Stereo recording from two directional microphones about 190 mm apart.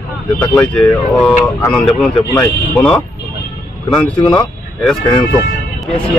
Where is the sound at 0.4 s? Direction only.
5° left (ahead or behind).